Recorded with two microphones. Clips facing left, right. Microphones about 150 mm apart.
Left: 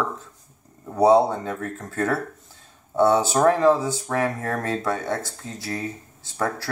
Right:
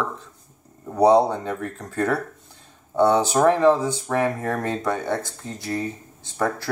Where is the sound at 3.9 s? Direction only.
20° right (ahead or behind).